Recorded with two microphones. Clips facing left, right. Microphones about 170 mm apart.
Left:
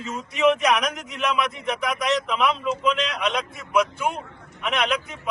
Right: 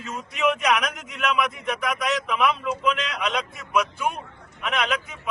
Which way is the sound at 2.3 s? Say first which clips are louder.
Even; 15° left (ahead or behind).